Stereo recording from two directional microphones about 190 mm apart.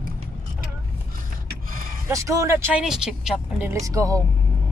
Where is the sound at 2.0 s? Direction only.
15° right (ahead or behind).